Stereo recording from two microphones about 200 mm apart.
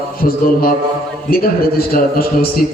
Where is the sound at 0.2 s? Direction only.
45° left (ahead or behind).